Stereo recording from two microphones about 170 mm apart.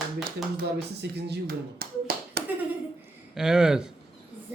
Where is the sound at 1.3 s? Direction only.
65° right (ahead or behind).